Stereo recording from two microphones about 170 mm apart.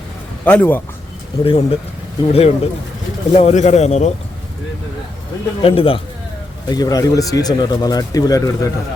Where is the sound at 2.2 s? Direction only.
35° left (ahead or behind).